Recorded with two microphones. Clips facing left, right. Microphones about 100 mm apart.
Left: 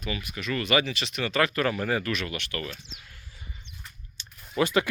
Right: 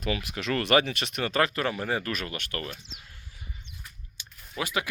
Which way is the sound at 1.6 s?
20° right (ahead or behind).